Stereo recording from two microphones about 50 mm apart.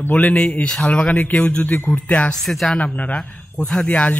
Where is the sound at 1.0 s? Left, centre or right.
Left.